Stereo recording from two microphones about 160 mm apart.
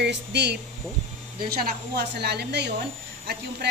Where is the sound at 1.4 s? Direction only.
75° right (ahead or behind).